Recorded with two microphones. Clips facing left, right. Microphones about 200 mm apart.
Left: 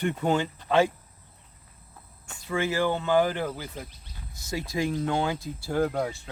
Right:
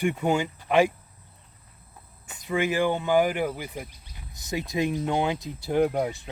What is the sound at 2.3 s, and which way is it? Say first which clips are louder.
Speech: right 2 dB; 15° right (ahead or behind).